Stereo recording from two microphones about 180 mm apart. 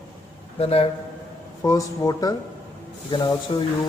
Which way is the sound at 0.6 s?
35° left (ahead or behind).